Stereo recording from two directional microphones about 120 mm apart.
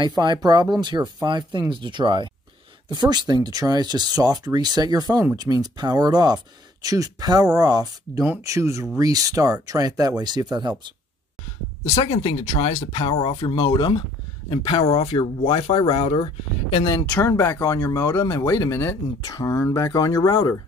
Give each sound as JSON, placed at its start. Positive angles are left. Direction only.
{"t": 0.0, "sound": "speech", "side_deg": -40}
{"t": 11.8, "sound": "speech", "side_deg": 65}
{"t": 15.0, "sound": "speech", "side_deg": 40}
{"t": 17.1, "sound": "speech", "side_deg": 20}